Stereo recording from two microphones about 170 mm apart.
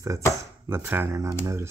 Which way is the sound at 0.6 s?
15° right (ahead or behind).